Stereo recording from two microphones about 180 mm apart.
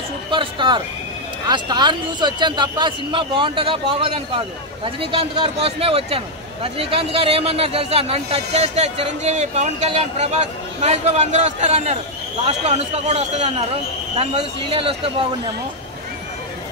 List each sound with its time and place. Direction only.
0.3 s a man's voice: 25° right (ahead or behind)